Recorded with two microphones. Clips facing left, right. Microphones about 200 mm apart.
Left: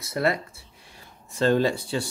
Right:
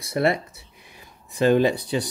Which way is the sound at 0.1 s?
25° right (ahead or behind).